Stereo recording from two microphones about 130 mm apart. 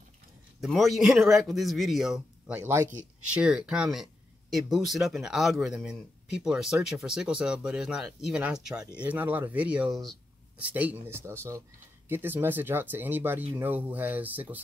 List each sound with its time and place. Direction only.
0.6 s speech: centre (ahead or behind)
2.5 s speech: 20° right (ahead or behind)
3.3 s speech: 5° right (ahead or behind)